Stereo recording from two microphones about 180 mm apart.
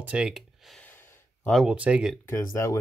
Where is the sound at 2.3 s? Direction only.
15° left (ahead or behind).